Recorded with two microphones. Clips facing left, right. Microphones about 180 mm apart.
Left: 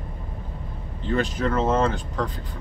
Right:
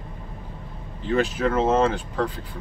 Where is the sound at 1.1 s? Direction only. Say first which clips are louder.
Right 2 dB; 5° right (ahead or behind).